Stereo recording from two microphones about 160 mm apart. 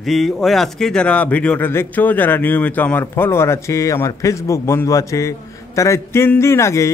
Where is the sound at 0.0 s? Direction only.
Centre (ahead or behind).